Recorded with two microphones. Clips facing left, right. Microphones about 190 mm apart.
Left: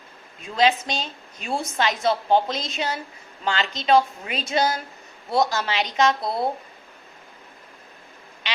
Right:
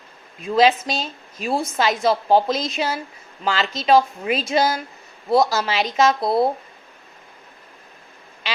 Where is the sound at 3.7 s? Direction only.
5° right (ahead or behind).